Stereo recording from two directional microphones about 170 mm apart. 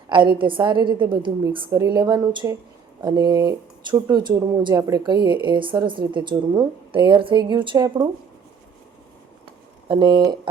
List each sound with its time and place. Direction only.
0.1 s speech: 30° right (ahead or behind)
9.9 s speech: 25° right (ahead or behind)